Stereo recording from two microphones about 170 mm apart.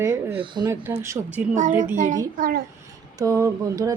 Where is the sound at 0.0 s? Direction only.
20° right (ahead or behind).